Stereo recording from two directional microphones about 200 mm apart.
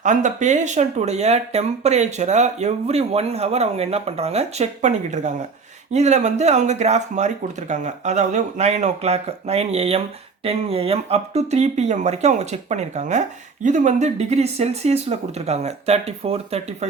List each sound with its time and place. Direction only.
0.0 s speech: 40° right (ahead or behind)